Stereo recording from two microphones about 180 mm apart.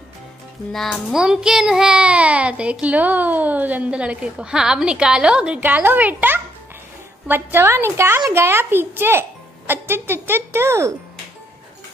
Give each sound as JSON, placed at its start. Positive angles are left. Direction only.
{"t": 0.7, "sound": "child singing", "side_deg": 0}